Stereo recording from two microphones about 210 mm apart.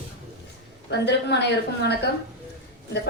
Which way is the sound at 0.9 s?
55° left (ahead or behind).